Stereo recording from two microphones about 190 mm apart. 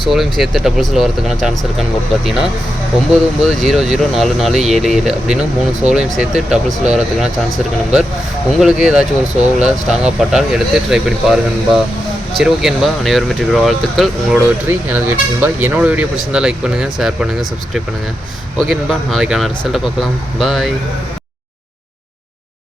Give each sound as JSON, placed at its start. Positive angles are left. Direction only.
{"t": 0.1, "sound": "speech", "side_deg": 0}
{"t": 14.7, "sound": "speech", "side_deg": -10}
{"t": 18.7, "sound": "speech", "side_deg": 0}